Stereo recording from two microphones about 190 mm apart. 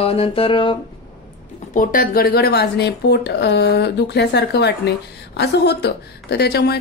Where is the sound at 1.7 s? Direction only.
45° left (ahead or behind).